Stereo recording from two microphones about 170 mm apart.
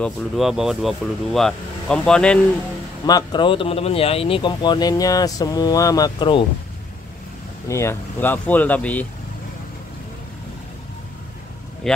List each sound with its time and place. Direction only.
0.0 s speech: centre (ahead or behind)
3.1 s speech: 25° left (ahead or behind)
7.6 s speech: 15° left (ahead or behind)
11.8 s speech: 5° left (ahead or behind)